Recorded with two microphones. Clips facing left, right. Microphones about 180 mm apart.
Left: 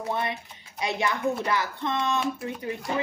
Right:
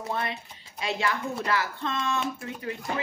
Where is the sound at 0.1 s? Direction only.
20° left (ahead or behind).